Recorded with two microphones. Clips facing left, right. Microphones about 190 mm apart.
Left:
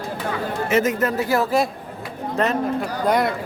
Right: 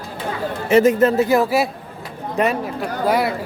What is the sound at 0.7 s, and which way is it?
Speech, 30° right (ahead or behind).